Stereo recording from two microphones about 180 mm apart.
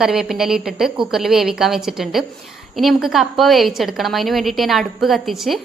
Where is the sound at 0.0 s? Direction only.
Centre (ahead or behind).